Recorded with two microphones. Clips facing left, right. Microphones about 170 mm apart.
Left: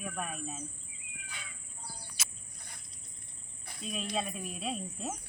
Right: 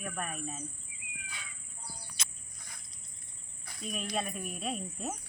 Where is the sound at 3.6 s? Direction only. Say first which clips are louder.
Even; 25° left (ahead or behind).